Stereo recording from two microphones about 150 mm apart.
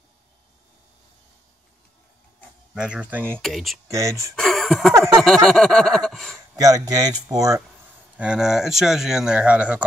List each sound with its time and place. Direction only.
2.7 s speech: 5° right (ahead or behind)
3.4 s speech: centre (ahead or behind)
3.9 s speech: 20° right (ahead or behind)
4.4 s a sound: centre (ahead or behind)
5.0 s speech: centre (ahead or behind)
6.5 s speech: 25° right (ahead or behind)
8.2 s speech: 5° right (ahead or behind)